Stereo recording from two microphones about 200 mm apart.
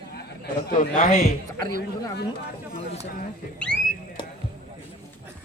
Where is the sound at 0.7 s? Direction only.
40° left (ahead or behind).